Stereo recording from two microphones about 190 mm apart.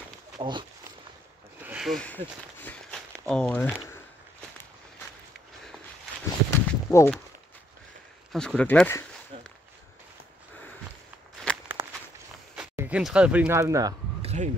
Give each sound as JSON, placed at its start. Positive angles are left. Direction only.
{"t": 0.4, "sound": "speech", "side_deg": -25}
{"t": 1.7, "sound": "walk", "side_deg": 0}
{"t": 6.5, "sound": "a sound", "side_deg": 15}
{"t": 8.3, "sound": "speech", "side_deg": 0}
{"t": 9.3, "sound": "walk", "side_deg": -30}
{"t": 11.5, "sound": "walk", "side_deg": 5}
{"t": 12.5, "sound": "speech", "side_deg": -5}
{"t": 14.2, "sound": "a sound", "side_deg": -35}